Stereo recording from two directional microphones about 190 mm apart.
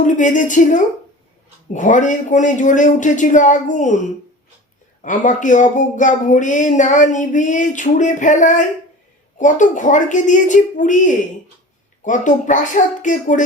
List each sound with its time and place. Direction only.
0.0 s speech: 40° left (ahead or behind)
5.0 s speech: 40° left (ahead or behind)